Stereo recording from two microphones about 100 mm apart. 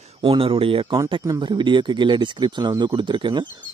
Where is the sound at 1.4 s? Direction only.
50° right (ahead or behind).